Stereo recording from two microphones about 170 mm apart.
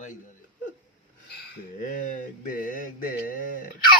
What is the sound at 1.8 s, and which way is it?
Mantra, 50° left (ahead or behind).